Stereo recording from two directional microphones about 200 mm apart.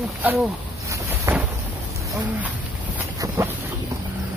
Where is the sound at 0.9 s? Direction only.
15° right (ahead or behind).